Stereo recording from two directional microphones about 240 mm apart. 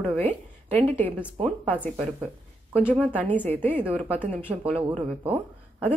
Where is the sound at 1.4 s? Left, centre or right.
Centre.